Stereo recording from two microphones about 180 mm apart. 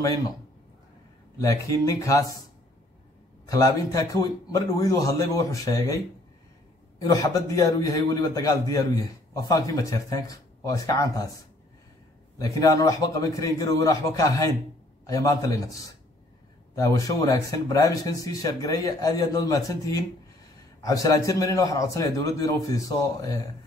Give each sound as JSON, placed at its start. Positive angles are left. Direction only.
{"t": 1.4, "sound": "a man's voice", "side_deg": 20}
{"t": 3.4, "sound": "a man's voice", "side_deg": 20}
{"t": 7.0, "sound": "a man's voice", "side_deg": 20}
{"t": 12.4, "sound": "a man's voice", "side_deg": 20}